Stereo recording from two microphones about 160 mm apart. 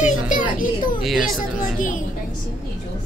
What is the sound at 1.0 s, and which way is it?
Speech, centre (ahead or behind).